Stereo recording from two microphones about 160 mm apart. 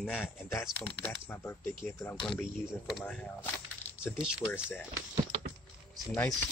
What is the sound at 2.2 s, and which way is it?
Speech, centre (ahead or behind).